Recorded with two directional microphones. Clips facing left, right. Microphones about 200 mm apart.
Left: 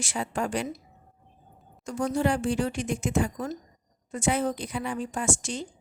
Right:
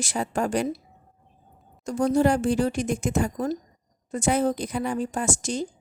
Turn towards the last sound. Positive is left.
turn(degrees=-40)  # may be behind; listen again after turning